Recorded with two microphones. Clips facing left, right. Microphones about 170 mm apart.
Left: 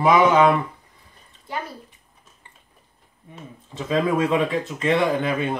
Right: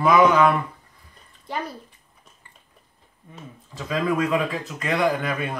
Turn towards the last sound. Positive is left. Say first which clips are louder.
# left 2 dB
turn(degrees=25)  # may be behind; listen again after turning